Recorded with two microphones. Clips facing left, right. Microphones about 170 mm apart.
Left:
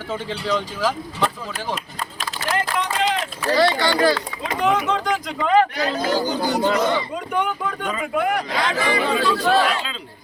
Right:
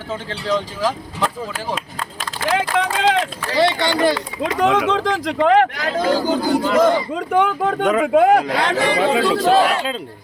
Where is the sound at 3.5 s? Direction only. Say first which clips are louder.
Right 2 dB; 20° right (ahead or behind).